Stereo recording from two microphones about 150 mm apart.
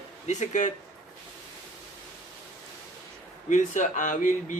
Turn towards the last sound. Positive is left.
turn(degrees=60)  # may be behind; listen again after turning